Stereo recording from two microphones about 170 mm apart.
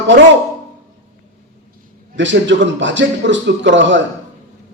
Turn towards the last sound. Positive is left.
turn(degrees=-90)